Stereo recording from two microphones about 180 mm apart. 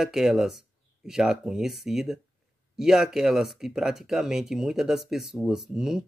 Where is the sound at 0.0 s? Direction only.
Centre (ahead or behind).